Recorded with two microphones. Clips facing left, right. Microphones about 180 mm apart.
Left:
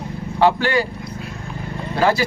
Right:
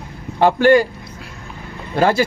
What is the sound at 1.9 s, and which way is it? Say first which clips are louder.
Speech: right 2 dB; 50° right (ahead or behind).